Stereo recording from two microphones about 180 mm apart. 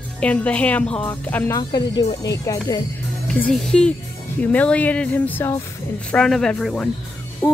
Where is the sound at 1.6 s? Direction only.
25° left (ahead or behind).